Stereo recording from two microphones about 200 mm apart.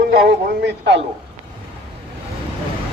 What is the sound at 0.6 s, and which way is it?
Speech, 60° right (ahead or behind).